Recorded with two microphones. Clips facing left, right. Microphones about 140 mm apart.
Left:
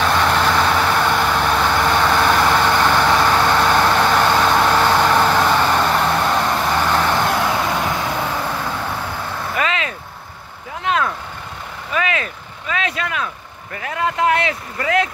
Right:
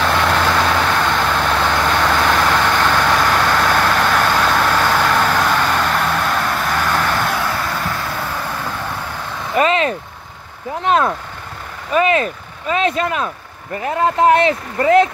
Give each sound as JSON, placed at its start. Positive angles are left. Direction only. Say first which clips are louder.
{"t": 0.8, "sound": "vehicle", "louder": "even", "side_deg": 15}
{"t": 9.6, "sound": "vehicle", "louder": "right 8 dB", "side_deg": -35}
{"t": 13.7, "sound": "speech", "louder": "right 5 dB", "side_deg": -30}